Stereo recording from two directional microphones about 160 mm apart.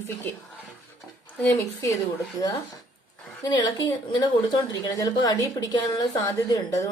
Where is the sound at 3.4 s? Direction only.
25° left (ahead or behind).